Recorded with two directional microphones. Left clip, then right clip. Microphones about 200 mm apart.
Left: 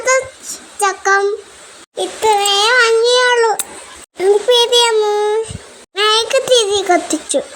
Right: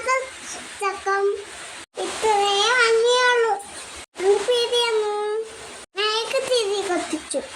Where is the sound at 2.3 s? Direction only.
55° left (ahead or behind).